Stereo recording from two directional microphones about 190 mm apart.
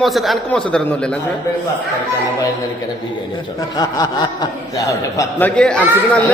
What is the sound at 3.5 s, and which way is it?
Speech, 20° left (ahead or behind).